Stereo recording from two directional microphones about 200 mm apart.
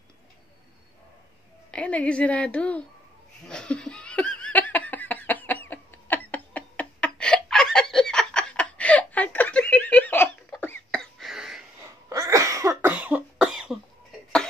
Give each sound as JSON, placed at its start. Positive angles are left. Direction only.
{"t": 1.7, "sound": "a woman's voice", "side_deg": 5}
{"t": 3.4, "sound": "laughter", "side_deg": 5}
{"t": 12.1, "sound": "cough", "side_deg": -15}